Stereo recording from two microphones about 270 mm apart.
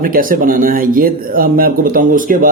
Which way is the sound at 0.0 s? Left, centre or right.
Right.